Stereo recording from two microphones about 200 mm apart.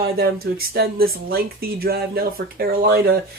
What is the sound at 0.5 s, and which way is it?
Speech, 50° right (ahead or behind).